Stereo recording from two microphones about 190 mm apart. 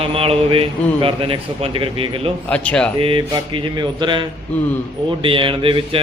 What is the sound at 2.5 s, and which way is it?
Speech, 5° left (ahead or behind).